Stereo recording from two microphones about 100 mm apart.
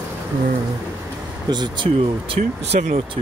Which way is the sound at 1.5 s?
50° right (ahead or behind).